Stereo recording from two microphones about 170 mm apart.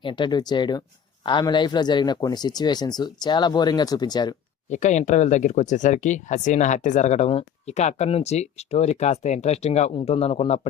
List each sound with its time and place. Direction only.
0.0 s speech: 25° left (ahead or behind)
4.7 s speech: 45° left (ahead or behind)